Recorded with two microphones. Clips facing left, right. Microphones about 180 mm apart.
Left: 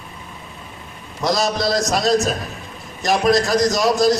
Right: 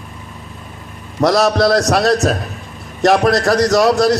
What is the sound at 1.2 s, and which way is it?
A man's voice, 70° right (ahead or behind).